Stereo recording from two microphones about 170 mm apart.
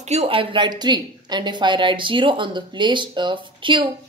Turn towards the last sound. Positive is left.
turn(degrees=-30)  # may be behind; listen again after turning